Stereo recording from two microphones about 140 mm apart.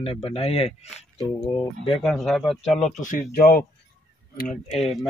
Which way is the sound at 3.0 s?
75° left (ahead or behind).